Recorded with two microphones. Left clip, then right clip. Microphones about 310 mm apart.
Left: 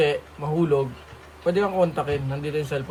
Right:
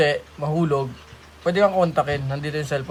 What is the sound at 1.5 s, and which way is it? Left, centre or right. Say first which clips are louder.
Speech: right 5 dB; right.